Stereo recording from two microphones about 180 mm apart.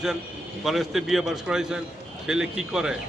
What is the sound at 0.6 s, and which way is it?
A man's voice, centre (ahead or behind).